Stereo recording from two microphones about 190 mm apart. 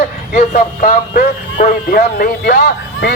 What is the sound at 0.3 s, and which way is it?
Speech, 40° left (ahead or behind).